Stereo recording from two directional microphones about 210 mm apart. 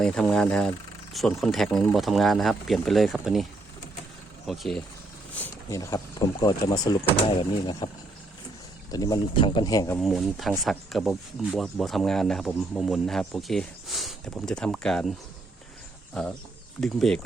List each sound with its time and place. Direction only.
0.0 s speech: 5° left (ahead or behind)
4.4 s speech: centre (ahead or behind)
5.3 s speech: 10° left (ahead or behind)
8.9 s speech: 20° left (ahead or behind)
10.0 s speech: centre (ahead or behind)
16.2 s speech: 5° left (ahead or behind)